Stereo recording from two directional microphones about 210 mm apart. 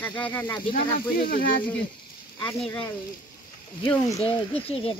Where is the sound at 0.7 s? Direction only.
40° left (ahead or behind).